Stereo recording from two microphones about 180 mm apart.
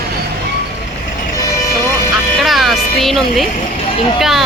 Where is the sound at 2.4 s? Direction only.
Centre (ahead or behind).